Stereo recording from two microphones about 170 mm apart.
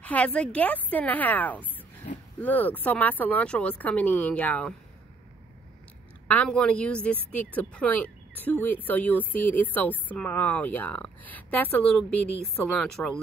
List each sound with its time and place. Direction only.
0.0 s speech: 10° left (ahead or behind)
2.1 s a sound: 50° left (ahead or behind)
2.4 s speech: 10° left (ahead or behind)
6.3 s speech: 5° left (ahead or behind)